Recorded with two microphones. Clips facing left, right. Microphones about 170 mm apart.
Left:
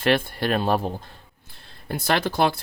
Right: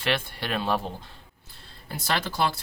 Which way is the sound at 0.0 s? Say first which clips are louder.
Left 7 dB; 45° left (ahead or behind).